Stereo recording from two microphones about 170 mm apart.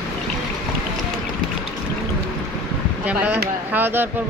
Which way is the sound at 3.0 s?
10° right (ahead or behind).